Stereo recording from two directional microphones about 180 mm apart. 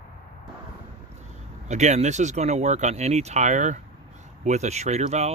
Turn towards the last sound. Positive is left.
turn(degrees=-40)  # may be behind; listen again after turning